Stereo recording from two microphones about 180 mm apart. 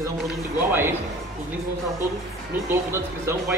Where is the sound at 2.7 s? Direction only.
15° right (ahead or behind).